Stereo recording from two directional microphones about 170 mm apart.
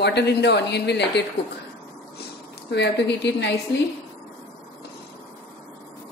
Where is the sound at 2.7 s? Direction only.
85° left.